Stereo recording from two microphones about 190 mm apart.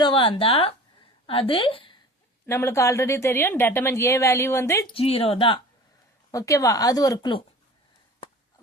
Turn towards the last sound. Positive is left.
turn(degrees=20)  # may be behind; listen again after turning